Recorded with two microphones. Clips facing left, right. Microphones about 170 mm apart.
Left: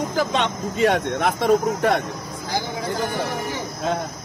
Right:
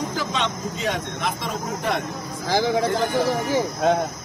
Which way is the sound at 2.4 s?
90° right.